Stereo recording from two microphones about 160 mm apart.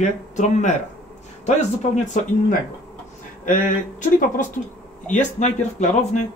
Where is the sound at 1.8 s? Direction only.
45° left (ahead or behind).